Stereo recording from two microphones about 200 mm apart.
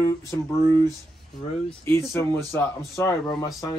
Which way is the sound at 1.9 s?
10° left (ahead or behind).